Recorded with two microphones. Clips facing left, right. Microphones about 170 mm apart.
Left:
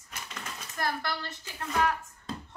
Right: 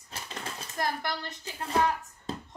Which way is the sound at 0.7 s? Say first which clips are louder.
Right 1 dB; 15° right (ahead or behind).